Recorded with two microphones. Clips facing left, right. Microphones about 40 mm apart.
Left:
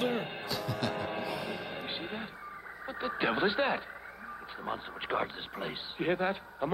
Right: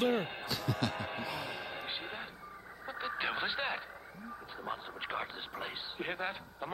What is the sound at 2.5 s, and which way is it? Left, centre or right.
Vehicle, left.